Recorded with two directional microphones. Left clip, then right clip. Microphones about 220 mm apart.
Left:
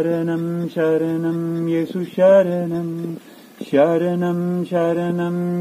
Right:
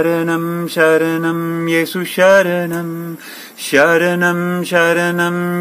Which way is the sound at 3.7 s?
20° right (ahead or behind).